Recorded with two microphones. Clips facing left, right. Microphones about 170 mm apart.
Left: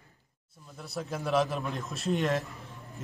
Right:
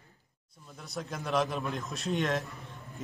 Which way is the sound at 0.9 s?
5° left (ahead or behind).